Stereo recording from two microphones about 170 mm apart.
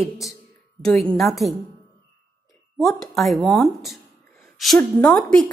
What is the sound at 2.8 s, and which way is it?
A woman's voice, centre (ahead or behind).